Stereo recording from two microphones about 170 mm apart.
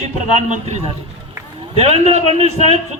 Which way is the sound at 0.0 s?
45° right (ahead or behind).